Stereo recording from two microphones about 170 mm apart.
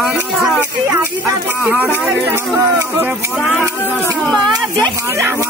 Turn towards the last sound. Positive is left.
turn(degrees=-15)  # may be behind; listen again after turning